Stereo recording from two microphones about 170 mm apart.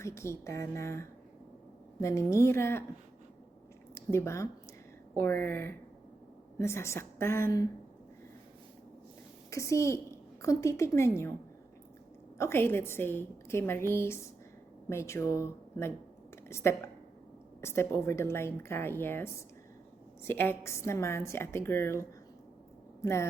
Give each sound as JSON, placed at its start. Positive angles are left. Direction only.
{"t": 0.0, "sound": "a woman's voice", "side_deg": 15}
{"t": 3.9, "sound": "a woman's voice", "side_deg": 15}
{"t": 9.5, "sound": "a woman's voice", "side_deg": 15}
{"t": 12.4, "sound": "a woman's voice", "side_deg": 15}
{"t": 16.5, "sound": "a woman's voice", "side_deg": 15}